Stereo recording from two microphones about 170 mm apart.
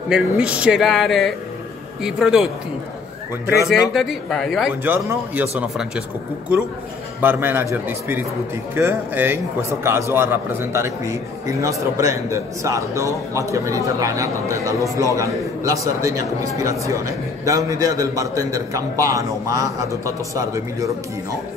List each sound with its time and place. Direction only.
0.1 s a man's voice: 5° right (ahead or behind)
3.7 s a man's voice: 5° right (ahead or behind)
7.2 s a man's voice: 10° right (ahead or behind)